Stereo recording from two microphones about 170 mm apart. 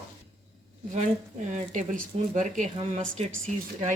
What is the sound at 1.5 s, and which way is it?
Speech, 50° right (ahead or behind).